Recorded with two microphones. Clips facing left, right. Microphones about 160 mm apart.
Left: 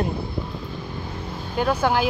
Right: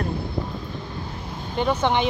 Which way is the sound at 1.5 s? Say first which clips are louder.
Even; 5° left (ahead or behind).